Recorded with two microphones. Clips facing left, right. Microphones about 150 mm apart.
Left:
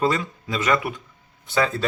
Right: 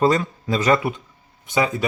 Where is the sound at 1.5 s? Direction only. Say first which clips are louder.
Right 1 dB; 15° right (ahead or behind).